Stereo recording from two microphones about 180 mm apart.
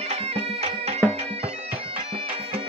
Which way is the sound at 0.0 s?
35° right (ahead or behind).